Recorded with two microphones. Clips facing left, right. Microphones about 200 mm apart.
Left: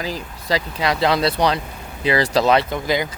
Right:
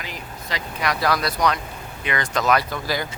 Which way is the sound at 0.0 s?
35° left (ahead or behind).